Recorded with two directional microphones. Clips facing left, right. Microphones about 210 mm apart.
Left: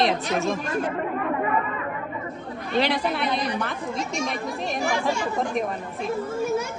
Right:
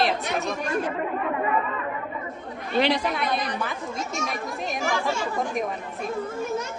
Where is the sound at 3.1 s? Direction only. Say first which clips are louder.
Left 2 dB; centre (ahead or behind).